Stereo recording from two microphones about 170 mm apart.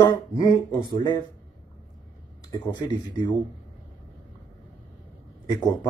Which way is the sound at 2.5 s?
25° left (ahead or behind).